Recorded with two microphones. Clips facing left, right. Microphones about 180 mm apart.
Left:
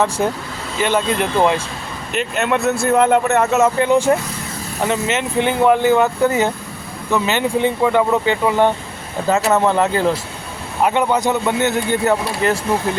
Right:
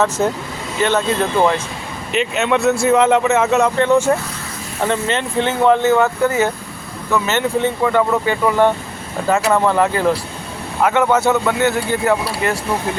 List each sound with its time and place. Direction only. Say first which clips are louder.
0.2 s speech: right 1 dB; 15° left (ahead or behind)
2.1 s a man's voice: right 2 dB; centre (ahead or behind); by 12.5 s 20° left (ahead or behind)